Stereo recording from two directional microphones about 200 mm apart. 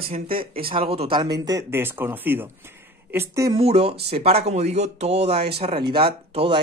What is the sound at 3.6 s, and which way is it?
Speech, 30° right (ahead or behind).